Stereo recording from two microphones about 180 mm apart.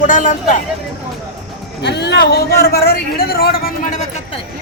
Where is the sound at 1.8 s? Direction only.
70° left (ahead or behind).